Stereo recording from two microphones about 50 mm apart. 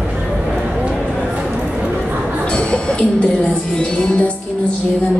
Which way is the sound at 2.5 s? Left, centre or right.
Left.